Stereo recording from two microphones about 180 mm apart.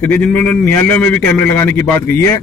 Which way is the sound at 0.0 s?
10° left (ahead or behind).